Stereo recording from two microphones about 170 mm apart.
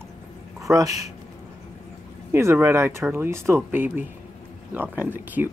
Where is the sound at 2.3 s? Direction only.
15° right (ahead or behind).